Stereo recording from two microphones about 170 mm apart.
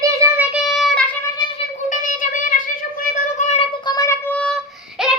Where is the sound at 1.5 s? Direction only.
50° left (ahead or behind).